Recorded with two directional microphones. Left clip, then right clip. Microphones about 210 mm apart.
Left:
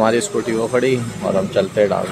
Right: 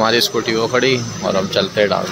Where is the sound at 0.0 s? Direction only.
10° left (ahead or behind).